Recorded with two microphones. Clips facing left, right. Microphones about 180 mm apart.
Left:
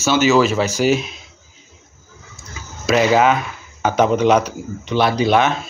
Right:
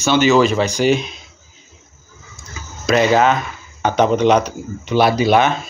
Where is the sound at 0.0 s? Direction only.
5° left (ahead or behind).